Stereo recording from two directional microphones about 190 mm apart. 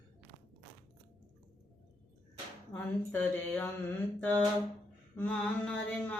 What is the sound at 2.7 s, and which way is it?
Mantra, 10° left (ahead or behind).